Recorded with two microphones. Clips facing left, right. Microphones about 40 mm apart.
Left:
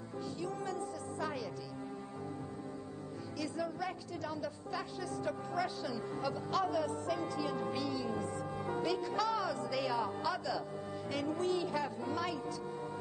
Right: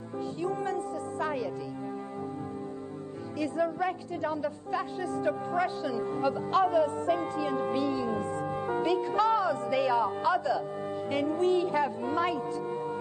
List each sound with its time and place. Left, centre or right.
0.4 s music: right
3.3 s speech: right